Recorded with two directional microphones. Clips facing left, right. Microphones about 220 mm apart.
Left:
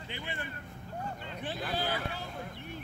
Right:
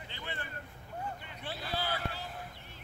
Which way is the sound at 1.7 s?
15° left (ahead or behind).